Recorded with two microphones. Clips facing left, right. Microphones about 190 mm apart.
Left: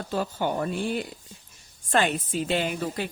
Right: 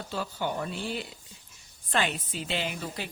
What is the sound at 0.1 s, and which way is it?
A woman's voice, 50° left (ahead or behind).